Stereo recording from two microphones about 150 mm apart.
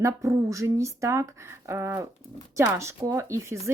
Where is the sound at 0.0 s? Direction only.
20° right (ahead or behind).